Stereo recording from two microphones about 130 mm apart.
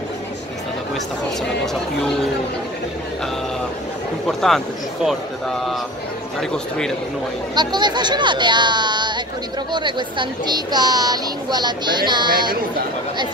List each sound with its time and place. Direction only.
4.3 s speech: 5° left (ahead or behind)
7.5 s speech: 35° right (ahead or behind)